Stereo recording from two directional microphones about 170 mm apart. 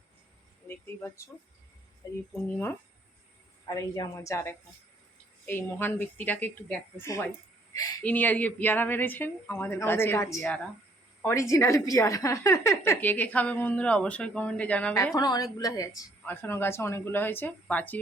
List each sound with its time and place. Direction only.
0.7 s a woman's voice: 15° left (ahead or behind)
2.3 s a woman's voice: 15° left (ahead or behind)
8.0 s a woman's voice: 10° left (ahead or behind)
14.9 s a woman's voice: 20° left (ahead or behind)